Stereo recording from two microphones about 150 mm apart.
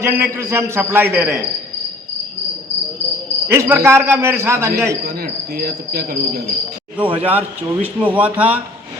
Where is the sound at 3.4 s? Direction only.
15° right (ahead or behind).